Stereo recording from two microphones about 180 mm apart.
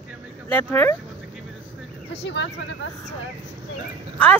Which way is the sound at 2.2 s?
90° left.